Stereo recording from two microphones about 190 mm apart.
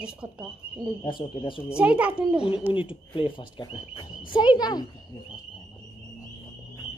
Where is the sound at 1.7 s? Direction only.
5° right (ahead or behind).